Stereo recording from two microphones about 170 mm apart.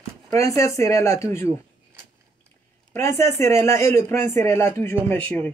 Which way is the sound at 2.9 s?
15° left (ahead or behind).